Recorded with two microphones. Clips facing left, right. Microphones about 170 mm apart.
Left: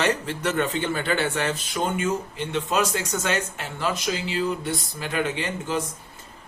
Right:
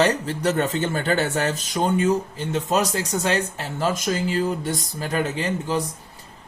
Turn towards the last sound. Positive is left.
turn(degrees=-40)  # may be behind; listen again after turning